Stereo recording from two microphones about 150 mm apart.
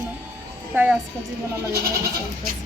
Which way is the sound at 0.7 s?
10° right (ahead or behind).